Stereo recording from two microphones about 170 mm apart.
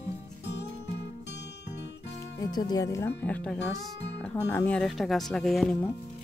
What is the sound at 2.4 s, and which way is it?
Speech, 20° left (ahead or behind).